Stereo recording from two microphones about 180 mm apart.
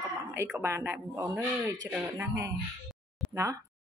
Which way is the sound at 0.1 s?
10° right (ahead or behind).